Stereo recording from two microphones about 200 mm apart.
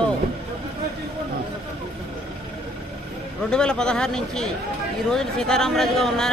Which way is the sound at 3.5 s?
5° left (ahead or behind).